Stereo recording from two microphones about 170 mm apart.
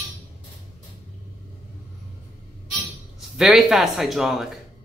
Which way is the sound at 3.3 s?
Centre (ahead or behind).